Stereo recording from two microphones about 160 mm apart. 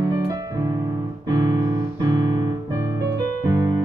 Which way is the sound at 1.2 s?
25° right (ahead or behind).